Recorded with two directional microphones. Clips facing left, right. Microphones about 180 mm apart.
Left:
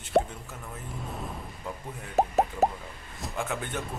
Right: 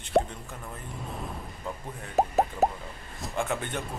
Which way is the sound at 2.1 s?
Centre (ahead or behind).